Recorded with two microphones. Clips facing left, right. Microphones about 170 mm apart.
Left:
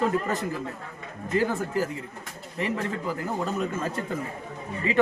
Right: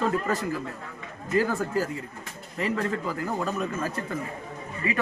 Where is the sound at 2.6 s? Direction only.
20° left (ahead or behind).